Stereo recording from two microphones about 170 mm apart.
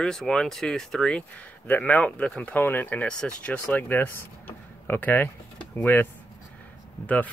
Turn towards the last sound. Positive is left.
turn(degrees=10)  # may be behind; listen again after turning